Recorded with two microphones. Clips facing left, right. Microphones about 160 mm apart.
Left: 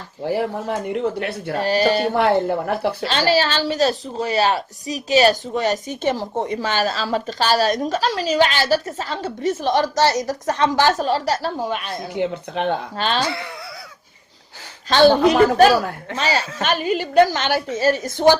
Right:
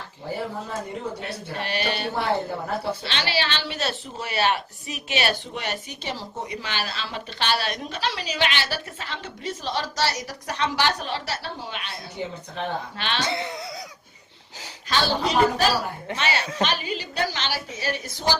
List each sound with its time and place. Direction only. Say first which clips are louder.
0.3 s speech: left 8 dB; 75° left (ahead or behind)
1.5 s a woman's voice: left 10 dB; 40° left (ahead or behind)
2.1 s speech: left 8 dB; 65° left (ahead or behind)
3.1 s a woman's voice: left 11 dB; 40° left (ahead or behind)
6.0 s a woman's voice: left 11 dB; 50° left (ahead or behind)
10.0 s speech: left 6 dB; 20° left (ahead or behind)
10.2 s a woman's voice: left 8 dB; 50° left (ahead or behind)
12.2 s speech: left 8 dB; 70° left (ahead or behind)
13.0 s a woman's voice: left 7 dB; 40° left (ahead or behind)
13.2 s speech: left 2 dB; 20° right (ahead or behind)
14.9 s speech: left 11 dB; 55° left (ahead or behind)
16.1 s a woman's voice: left 5 dB; 35° left (ahead or behind)
16.6 s a woman's voice: left 8 dB; 50° left (ahead or behind)